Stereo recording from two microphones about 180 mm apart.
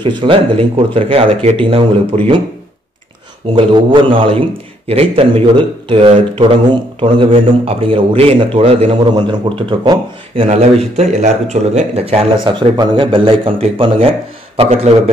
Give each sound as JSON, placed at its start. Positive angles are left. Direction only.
{"t": 0.0, "sound": "a man's voice", "side_deg": -25}
{"t": 3.5, "sound": "a man's voice", "side_deg": -25}